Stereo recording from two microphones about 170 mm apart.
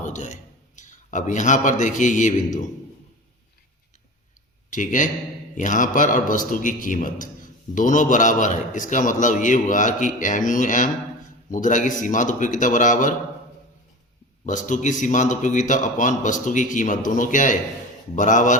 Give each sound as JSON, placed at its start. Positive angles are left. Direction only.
{"t": 0.0, "sound": "a sound", "side_deg": 45}
{"t": 0.8, "sound": "a man's voice", "side_deg": 45}
{"t": 4.7, "sound": "a man's voice", "side_deg": 50}
{"t": 14.4, "sound": "a man's voice", "side_deg": 50}